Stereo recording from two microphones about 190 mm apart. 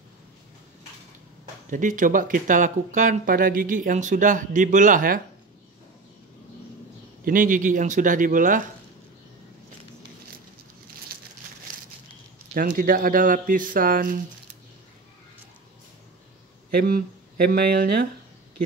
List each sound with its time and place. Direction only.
1.7 s speech: 45° right (ahead or behind)
7.2 s speech: 45° right (ahead or behind)
11.1 s crumpling: 50° right (ahead or behind)
12.5 s speech: 50° right (ahead or behind)
16.7 s speech: 55° right (ahead or behind)